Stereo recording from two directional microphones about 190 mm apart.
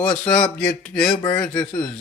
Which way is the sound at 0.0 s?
5° left (ahead or behind).